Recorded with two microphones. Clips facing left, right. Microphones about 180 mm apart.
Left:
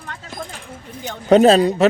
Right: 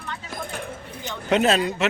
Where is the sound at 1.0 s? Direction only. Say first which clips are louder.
Left 9 dB; 45° left (ahead or behind).